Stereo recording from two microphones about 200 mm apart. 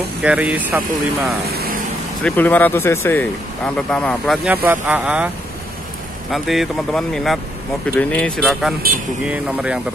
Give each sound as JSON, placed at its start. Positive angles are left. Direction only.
{"t": 0.2, "sound": "speech", "side_deg": -5}
{"t": 1.5, "sound": "vehicle", "side_deg": -50}
{"t": 2.2, "sound": "speech", "side_deg": 10}
{"t": 6.3, "sound": "speech", "side_deg": 0}